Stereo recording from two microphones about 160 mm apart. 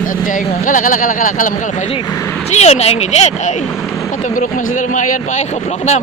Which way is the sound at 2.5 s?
40° left (ahead or behind).